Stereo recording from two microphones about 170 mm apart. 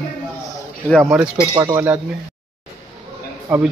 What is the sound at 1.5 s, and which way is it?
Speech, 20° right (ahead or behind).